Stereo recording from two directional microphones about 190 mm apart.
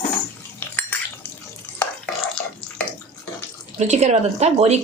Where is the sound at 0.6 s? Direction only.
10° left (ahead or behind).